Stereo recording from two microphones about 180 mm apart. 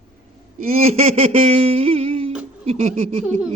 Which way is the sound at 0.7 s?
35° right (ahead or behind).